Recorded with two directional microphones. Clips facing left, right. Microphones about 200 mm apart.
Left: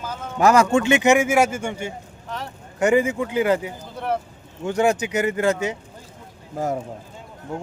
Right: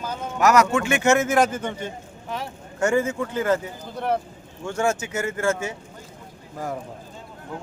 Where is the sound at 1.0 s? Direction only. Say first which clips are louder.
Left 2 dB; 15° left (ahead or behind).